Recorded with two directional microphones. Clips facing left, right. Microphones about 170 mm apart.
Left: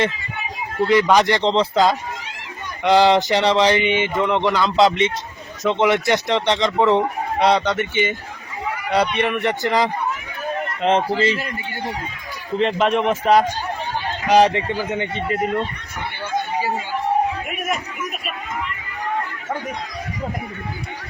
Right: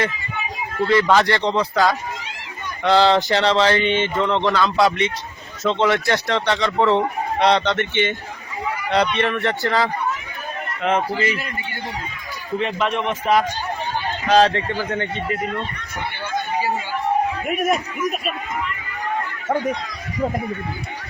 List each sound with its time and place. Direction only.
0.9 s a man's voice: 15° left (ahead or behind)
9.1 s speech: 15° left (ahead or behind)
10.8 s a man's voice: 30° left (ahead or behind)
12.5 s a man's voice: 30° left (ahead or behind)
14.3 s speech: 15° left (ahead or behind)